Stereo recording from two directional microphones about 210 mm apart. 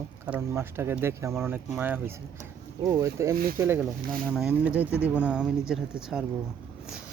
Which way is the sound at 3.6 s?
10° right (ahead or behind).